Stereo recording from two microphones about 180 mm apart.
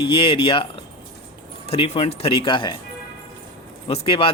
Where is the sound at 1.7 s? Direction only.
30° left (ahead or behind).